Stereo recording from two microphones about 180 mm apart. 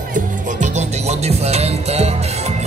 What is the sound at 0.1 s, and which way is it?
Music, 40° right (ahead or behind).